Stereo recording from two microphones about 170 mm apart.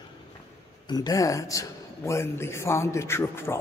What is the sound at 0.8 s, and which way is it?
A man's voice, 25° left (ahead or behind).